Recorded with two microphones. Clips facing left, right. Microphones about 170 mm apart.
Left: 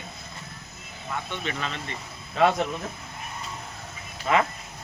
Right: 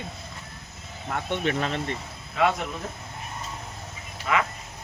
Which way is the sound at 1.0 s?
55° right (ahead or behind).